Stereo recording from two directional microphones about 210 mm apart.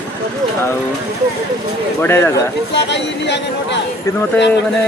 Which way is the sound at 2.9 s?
55° left (ahead or behind).